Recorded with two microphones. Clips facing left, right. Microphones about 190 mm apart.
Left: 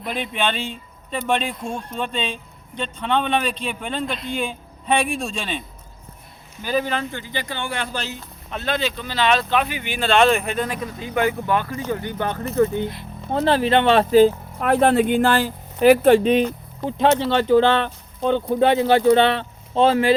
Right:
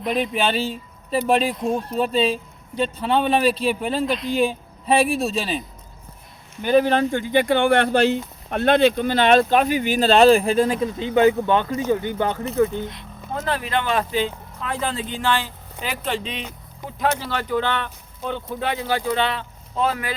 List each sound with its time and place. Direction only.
0.0 s speech: centre (ahead or behind)
6.8 s speech: 40° right (ahead or behind); by 12.7 s 15° right (ahead or behind)
13.3 s speech: 30° left (ahead or behind)
14.6 s speech: 65° left (ahead or behind)
16.8 s speech: 25° left (ahead or behind)